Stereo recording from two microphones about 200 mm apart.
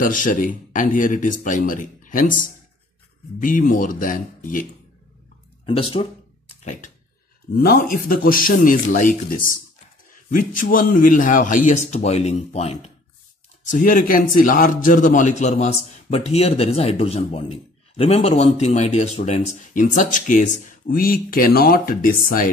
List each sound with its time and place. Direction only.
0.0 s a man's voice: 40° left (ahead or behind)
5.7 s speech: 25° left (ahead or behind)
6.5 s a sound: 35° left (ahead or behind)
7.5 s a man's voice: 50° left (ahead or behind); by 12.9 s 30° left (ahead or behind)
13.7 s a man's voice: 40° left (ahead or behind)